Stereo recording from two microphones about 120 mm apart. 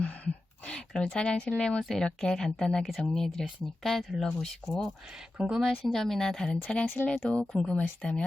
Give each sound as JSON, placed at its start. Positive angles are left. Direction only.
{"t": 0.6, "sound": "speech", "side_deg": 10}
{"t": 6.8, "sound": "speech", "side_deg": 15}